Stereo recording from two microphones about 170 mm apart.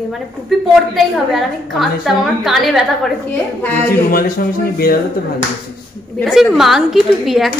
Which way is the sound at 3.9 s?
60° left (ahead or behind).